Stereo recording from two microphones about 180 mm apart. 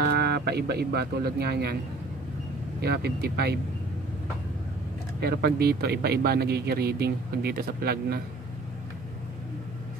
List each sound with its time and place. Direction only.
0.0 s speech: 65° right (ahead or behind)
2.8 s speech: 60° right (ahead or behind)
5.2 s speech: 65° right (ahead or behind)